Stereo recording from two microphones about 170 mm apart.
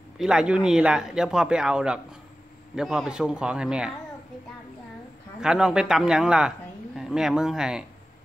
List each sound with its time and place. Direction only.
0.2 s a man's voice: 5° right (ahead or behind)
5.4 s a man's voice: 5° right (ahead or behind)